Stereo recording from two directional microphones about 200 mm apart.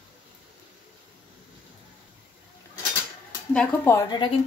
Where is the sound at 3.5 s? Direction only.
5° left (ahead or behind).